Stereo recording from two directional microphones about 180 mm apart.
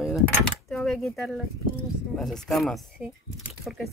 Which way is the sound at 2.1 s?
5° left (ahead or behind).